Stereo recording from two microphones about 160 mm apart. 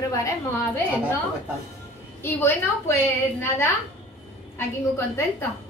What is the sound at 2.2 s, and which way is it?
A woman's voice, 15° left (ahead or behind).